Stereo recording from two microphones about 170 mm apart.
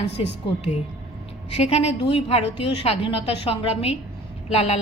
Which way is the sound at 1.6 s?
35° left (ahead or behind).